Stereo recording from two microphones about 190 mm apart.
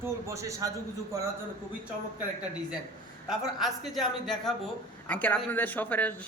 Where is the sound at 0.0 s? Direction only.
15° right (ahead or behind).